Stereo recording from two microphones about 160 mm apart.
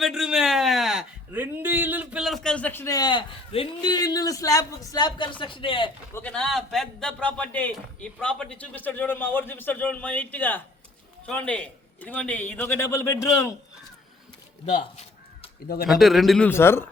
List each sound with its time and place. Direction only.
0.0 s a sound: 5° right (ahead or behind); by 5.9 s 30° left (ahead or behind)
6.1 s a man's voice: 5° left (ahead or behind)
14.7 s crow: 45° left (ahead or behind)
15.6 s speech: 70° left (ahead or behind)
15.9 s speech: centre (ahead or behind)
16.5 s a man's voice: 15° left (ahead or behind)